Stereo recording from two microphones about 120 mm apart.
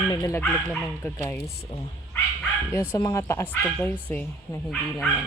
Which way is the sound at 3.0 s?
25° left (ahead or behind).